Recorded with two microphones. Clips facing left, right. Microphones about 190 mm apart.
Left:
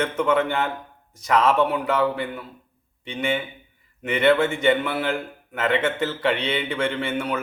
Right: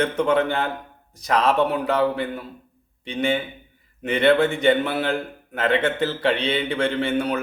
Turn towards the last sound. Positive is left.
turn(degrees=-35)  # may be behind; listen again after turning